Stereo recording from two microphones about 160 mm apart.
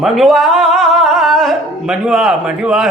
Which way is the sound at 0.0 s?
Centre (ahead or behind).